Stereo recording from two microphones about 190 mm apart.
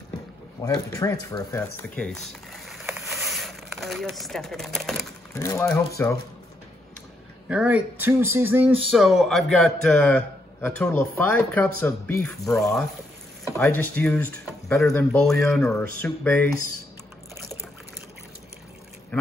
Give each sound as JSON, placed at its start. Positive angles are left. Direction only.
{"t": 0.6, "sound": "speech", "side_deg": 15}
{"t": 2.9, "sound": "a sound", "side_deg": 0}
{"t": 5.3, "sound": "speech", "side_deg": 15}
{"t": 7.4, "sound": "a man's voice", "side_deg": -5}
{"t": 12.5, "sound": "a man's voice", "side_deg": 0}